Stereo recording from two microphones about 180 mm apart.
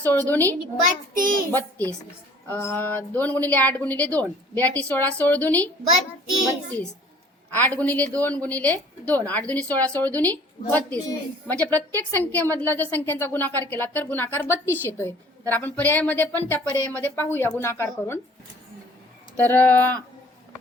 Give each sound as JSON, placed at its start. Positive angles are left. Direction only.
{"t": 0.0, "sound": "a woman's voice", "side_deg": 10}
{"t": 1.1, "sound": "a child's voice", "side_deg": -50}
{"t": 1.5, "sound": "a woman's voice", "side_deg": 10}
{"t": 7.5, "sound": "a woman's voice", "side_deg": 10}
{"t": 16.7, "sound": "a woman's voice", "side_deg": -15}
{"t": 17.0, "sound": "a woman's voice", "side_deg": 10}
{"t": 19.4, "sound": "a woman's voice", "side_deg": 10}